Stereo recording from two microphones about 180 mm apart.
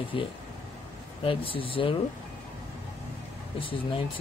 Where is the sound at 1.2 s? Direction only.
30° left (ahead or behind).